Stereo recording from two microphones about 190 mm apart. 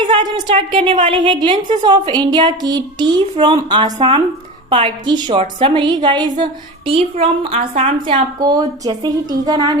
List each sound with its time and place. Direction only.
0.0 s a woman's voice: 25° right (ahead or behind)